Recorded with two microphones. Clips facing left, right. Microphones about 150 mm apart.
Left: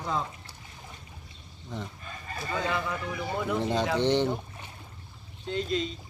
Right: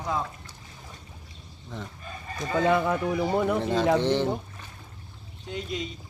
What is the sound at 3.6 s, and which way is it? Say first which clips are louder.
Speech: right 3 dB; centre (ahead or behind).